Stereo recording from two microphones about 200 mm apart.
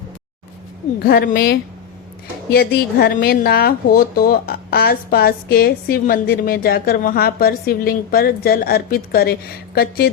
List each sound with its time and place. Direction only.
1.0 s speech: 50° left (ahead or behind)